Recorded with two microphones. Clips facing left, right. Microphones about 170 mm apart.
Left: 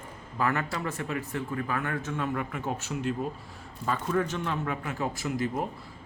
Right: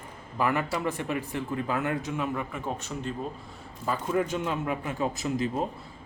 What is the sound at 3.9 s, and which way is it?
A man's voice, 15° right (ahead or behind).